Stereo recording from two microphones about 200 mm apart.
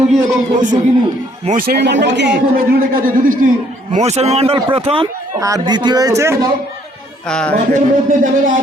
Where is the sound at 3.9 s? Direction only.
35° right (ahead or behind); by 6.5 s 15° right (ahead or behind).